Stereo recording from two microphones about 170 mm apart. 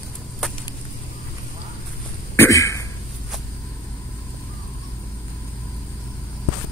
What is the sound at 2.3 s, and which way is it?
Throat clearing, 15° left (ahead or behind).